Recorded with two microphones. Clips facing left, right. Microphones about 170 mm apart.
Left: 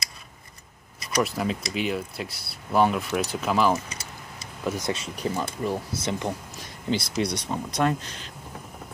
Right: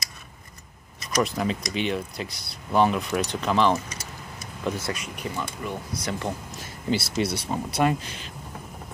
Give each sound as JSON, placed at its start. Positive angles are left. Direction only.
{"t": 1.2, "sound": "speech", "side_deg": 0}
{"t": 4.9, "sound": "speech", "side_deg": 30}
{"t": 6.0, "sound": "speech", "side_deg": 20}
{"t": 6.6, "sound": "speech", "side_deg": -5}